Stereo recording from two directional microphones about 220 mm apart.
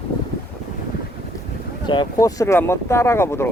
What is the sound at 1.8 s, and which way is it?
Speech, 20° left (ahead or behind).